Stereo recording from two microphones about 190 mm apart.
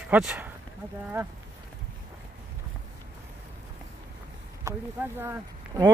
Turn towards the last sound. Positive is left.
turn(degrees=-15)  # may be behind; listen again after turning